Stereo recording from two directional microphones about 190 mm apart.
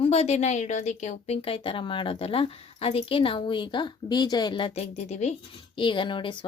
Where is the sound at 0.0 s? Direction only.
35° left (ahead or behind).